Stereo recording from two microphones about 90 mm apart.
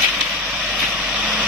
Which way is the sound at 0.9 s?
15° right (ahead or behind).